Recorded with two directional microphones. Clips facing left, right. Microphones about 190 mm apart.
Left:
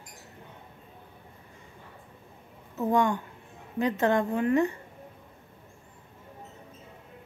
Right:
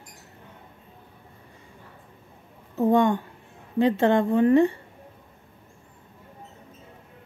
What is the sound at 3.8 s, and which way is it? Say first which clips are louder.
Speech: right 5 dB; 30° right (ahead or behind).